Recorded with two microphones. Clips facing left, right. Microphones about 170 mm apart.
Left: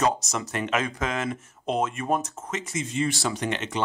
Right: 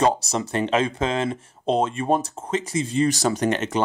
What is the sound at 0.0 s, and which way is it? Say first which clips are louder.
Speech: right 4 dB; 30° right (ahead or behind).